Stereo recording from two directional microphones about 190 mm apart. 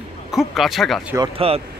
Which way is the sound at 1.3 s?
30° right (ahead or behind).